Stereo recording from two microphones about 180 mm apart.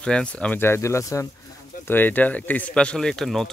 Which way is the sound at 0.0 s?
5° left (ahead or behind).